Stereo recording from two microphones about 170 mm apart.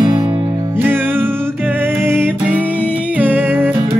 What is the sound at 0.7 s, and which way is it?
Music, 10° right (ahead or behind).